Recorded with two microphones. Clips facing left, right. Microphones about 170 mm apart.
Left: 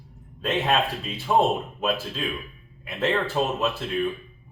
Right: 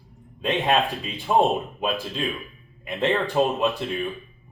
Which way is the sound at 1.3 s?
10° right (ahead or behind).